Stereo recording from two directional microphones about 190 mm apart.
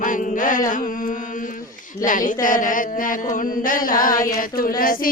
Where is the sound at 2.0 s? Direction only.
45° left (ahead or behind).